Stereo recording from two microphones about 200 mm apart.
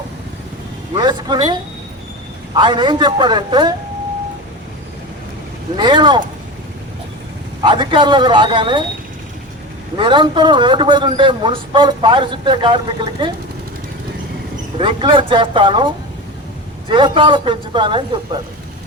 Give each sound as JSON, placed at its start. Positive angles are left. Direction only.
{"t": 0.9, "sound": "a man's voice", "side_deg": -20}
{"t": 2.6, "sound": "a man's voice", "side_deg": -20}
{"t": 5.7, "sound": "a man's voice", "side_deg": -20}
{"t": 7.6, "sound": "a man's voice", "side_deg": -25}
{"t": 10.0, "sound": "a man's voice", "side_deg": -25}
{"t": 14.8, "sound": "a man's voice", "side_deg": -25}
{"t": 16.9, "sound": "a man's voice", "side_deg": -25}